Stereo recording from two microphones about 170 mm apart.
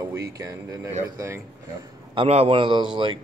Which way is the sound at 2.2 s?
35° right (ahead or behind).